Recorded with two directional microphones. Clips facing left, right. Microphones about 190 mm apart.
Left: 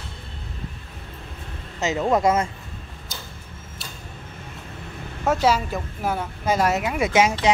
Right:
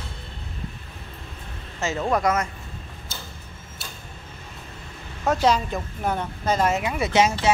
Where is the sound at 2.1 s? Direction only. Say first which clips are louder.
Left 3 dB; 25° left (ahead or behind).